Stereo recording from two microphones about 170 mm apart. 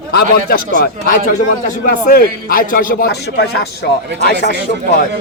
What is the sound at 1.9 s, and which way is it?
A man's voice, 60° left (ahead or behind).